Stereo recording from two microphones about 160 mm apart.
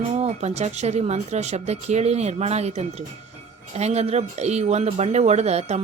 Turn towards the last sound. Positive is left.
turn(degrees=-40)  # may be behind; listen again after turning